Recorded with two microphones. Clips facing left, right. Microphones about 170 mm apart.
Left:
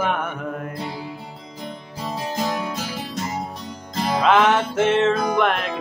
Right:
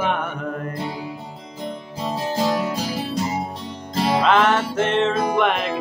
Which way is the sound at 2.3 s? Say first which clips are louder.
Right 4 dB; 35° right (ahead or behind).